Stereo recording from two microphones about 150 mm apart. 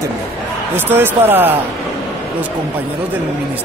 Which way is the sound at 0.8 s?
15° right (ahead or behind).